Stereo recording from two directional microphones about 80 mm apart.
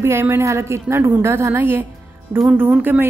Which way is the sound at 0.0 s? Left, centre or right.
Right.